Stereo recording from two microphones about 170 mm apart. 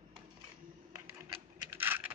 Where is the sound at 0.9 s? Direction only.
15° right (ahead or behind).